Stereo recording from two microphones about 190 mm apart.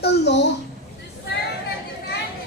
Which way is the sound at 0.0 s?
65° left (ahead or behind).